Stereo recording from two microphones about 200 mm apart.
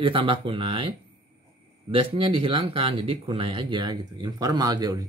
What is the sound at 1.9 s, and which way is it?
Speech, 25° right (ahead or behind).